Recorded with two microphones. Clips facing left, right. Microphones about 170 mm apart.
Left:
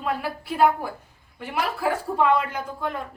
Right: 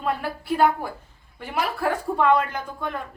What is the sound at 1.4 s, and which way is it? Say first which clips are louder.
Speech: right 1 dB; 10° left (ahead or behind).